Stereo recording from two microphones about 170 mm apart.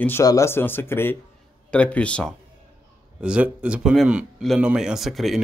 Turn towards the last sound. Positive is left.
turn(degrees=0)  # may be behind; listen again after turning